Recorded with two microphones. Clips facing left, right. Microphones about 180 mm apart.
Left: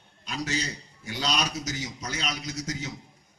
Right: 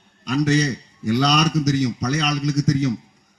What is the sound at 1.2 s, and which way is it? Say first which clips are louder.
Speech: right 9 dB; 55° right (ahead or behind).